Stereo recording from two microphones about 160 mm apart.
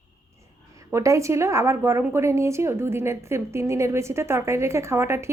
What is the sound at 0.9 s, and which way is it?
A woman's voice, 20° right (ahead or behind).